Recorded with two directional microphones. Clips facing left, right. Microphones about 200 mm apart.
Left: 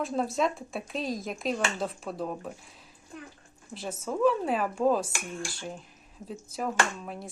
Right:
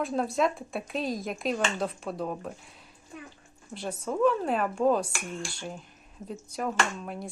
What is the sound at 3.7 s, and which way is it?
A woman's voice, centre (ahead or behind).